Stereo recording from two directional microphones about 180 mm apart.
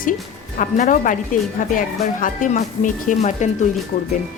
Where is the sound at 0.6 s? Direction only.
45° left (ahead or behind).